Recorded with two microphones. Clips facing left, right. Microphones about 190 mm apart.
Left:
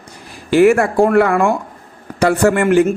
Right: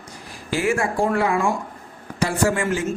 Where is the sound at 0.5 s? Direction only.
65° left (ahead or behind).